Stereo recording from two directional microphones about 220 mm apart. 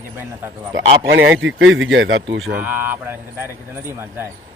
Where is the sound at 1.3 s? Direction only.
55° right (ahead or behind).